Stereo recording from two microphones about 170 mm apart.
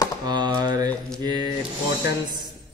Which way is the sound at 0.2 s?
25° right (ahead or behind).